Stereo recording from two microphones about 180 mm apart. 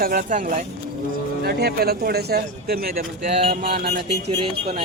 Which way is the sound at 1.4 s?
60° right (ahead or behind).